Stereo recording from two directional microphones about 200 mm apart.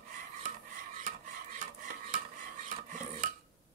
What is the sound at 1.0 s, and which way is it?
Cutlery, 40° right (ahead or behind).